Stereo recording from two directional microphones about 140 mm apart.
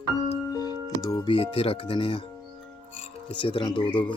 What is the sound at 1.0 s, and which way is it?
Speech, 30° left (ahead or behind).